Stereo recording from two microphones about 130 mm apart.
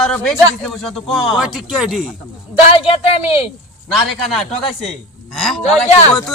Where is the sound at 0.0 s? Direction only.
5° left (ahead or behind).